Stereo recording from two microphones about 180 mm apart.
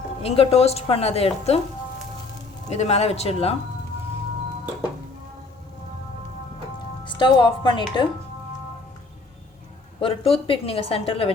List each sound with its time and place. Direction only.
0.2 s a woman's voice: 35° left (ahead or behind)
2.6 s a woman's voice: 35° left (ahead or behind)
7.0 s a woman's voice: 25° left (ahead or behind)
10.0 s a woman's voice: 30° left (ahead or behind)